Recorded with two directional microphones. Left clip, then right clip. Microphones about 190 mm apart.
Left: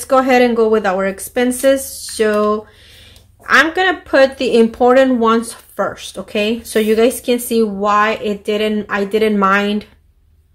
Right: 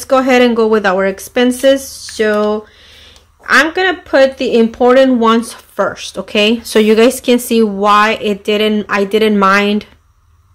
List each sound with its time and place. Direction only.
0.0 s speech: 15° right (ahead or behind)